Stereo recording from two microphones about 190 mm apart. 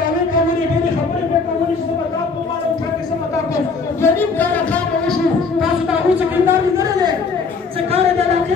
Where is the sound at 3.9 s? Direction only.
10° left (ahead or behind).